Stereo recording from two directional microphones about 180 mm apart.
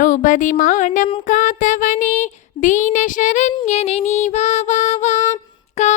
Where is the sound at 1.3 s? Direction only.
45° left (ahead or behind).